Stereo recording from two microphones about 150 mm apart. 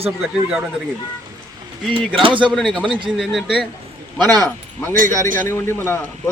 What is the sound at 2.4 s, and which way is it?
Speech, centre (ahead or behind).